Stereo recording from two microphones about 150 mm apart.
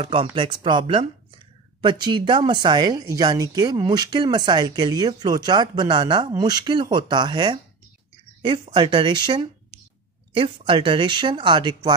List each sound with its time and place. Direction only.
0.0 s a woman's voice: 35° right (ahead or behind)